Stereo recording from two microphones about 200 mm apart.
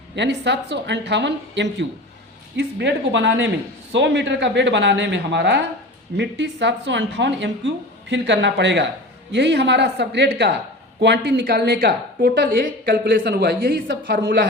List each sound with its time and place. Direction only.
0.2 s a woman's voice: 60° right (ahead or behind)